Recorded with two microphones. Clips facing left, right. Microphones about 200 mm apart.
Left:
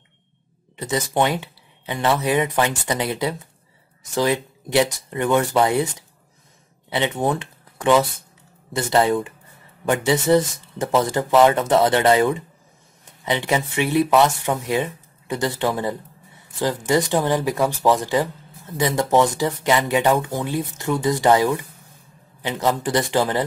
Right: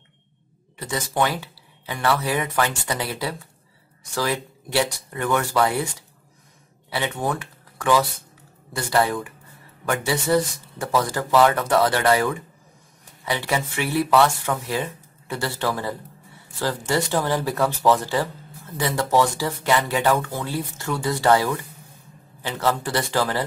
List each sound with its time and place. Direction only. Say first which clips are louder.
0.7 s speech: left 3 dB; 20° left (ahead or behind)